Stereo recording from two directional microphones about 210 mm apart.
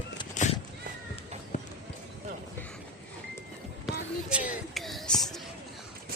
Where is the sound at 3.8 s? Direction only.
5° right (ahead or behind).